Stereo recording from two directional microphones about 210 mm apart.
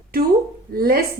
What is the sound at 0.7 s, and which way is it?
Speech, 45° right (ahead or behind).